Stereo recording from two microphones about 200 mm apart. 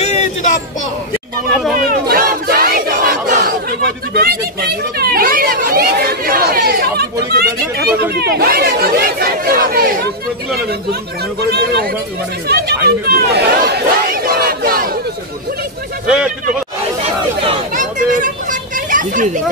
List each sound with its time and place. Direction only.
0.0 s a sound: 35° left (ahead or behind)
1.9 s battle cry: 50° right (ahead or behind)
4.1 s chatter: 50° right (ahead or behind)
11.4 s speech: 55° right (ahead or behind)
12.4 s chatter: 50° right (ahead or behind)
17.7 s children playing: 40° right (ahead or behind)